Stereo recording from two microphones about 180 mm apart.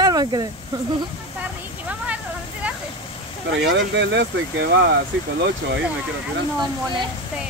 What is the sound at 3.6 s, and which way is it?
Speech, 85° right.